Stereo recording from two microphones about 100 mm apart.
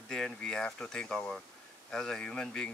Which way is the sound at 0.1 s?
5° left (ahead or behind).